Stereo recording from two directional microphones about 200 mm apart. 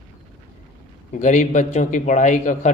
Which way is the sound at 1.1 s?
40° left (ahead or behind).